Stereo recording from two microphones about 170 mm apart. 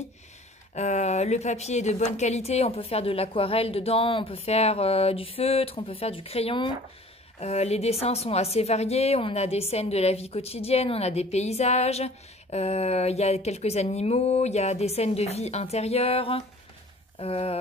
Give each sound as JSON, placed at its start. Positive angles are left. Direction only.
{"t": 0.7, "sound": "a woman's voice", "side_deg": 45}